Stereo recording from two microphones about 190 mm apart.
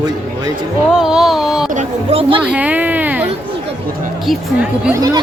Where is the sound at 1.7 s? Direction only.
35° right (ahead or behind).